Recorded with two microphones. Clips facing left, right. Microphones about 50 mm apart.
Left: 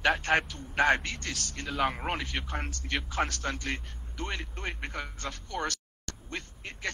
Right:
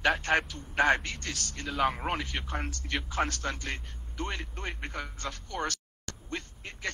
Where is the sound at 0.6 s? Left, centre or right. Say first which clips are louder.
Even; left.